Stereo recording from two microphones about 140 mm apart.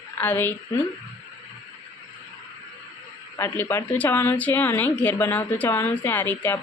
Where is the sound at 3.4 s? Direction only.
20° left (ahead or behind).